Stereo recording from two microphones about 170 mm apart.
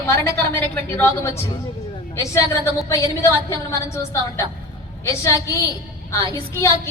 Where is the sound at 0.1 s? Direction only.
15° left (ahead or behind).